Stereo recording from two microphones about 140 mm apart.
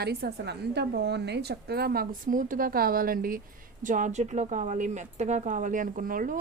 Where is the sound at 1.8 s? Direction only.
90° right.